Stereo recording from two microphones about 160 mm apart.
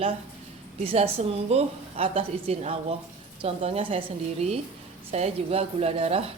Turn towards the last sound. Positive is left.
turn(degrees=-40)  # may be behind; listen again after turning